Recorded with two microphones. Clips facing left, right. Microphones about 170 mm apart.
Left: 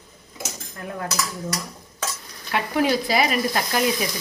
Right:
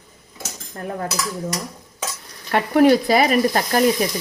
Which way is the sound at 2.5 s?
55° right (ahead or behind).